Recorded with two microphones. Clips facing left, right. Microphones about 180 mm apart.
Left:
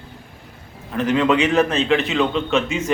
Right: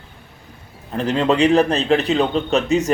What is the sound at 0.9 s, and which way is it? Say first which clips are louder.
A man's voice: even; 35° right (ahead or behind).